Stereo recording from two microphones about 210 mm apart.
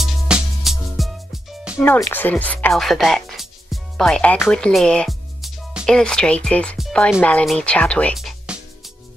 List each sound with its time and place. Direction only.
0.0 s music: centre (ahead or behind)
1.8 s speech: 10° left (ahead or behind)